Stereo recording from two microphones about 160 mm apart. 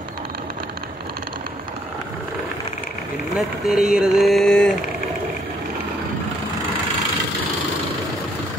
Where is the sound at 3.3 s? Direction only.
5° right (ahead or behind).